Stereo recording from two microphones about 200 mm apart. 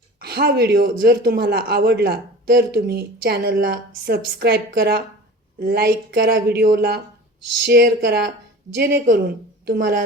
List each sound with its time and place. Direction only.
0.2 s speech: 55° right (ahead or behind)